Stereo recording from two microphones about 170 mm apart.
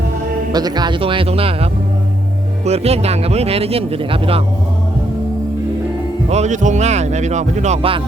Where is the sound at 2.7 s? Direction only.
40° right (ahead or behind).